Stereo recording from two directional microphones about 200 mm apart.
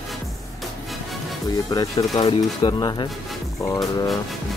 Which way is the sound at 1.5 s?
20° left (ahead or behind).